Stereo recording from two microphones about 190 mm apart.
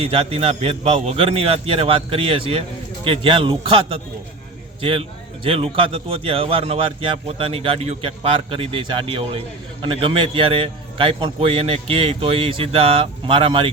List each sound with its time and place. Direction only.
0.0 s a man's voice: 30° right (ahead or behind)